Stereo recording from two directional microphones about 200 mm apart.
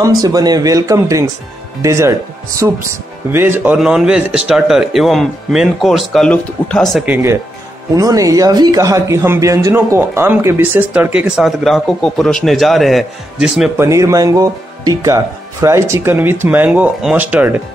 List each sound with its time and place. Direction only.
0.0 s speech: 20° right (ahead or behind); by 7.2 s centre (ahead or behind)
7.9 s speech: 15° right (ahead or behind)
13.8 s speech: 15° right (ahead or behind)